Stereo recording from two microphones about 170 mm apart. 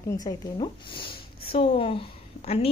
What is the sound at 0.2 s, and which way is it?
A woman's voice, 30° left (ahead or behind).